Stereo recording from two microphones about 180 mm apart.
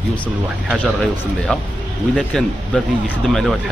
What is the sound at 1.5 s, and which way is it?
Speech, 5° left (ahead or behind).